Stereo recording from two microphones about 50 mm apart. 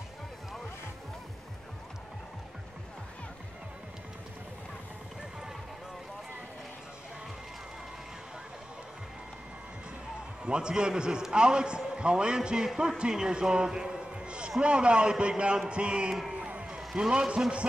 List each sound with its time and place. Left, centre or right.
10.4 s a man's voice: centre